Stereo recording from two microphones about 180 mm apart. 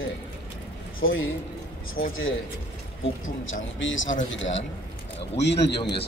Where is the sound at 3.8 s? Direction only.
90° left.